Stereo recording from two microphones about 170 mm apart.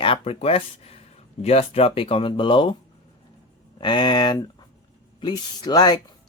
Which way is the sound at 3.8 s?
30° left (ahead or behind).